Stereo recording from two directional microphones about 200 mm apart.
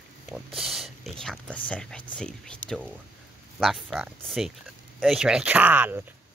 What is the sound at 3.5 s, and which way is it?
Speech, centre (ahead or behind).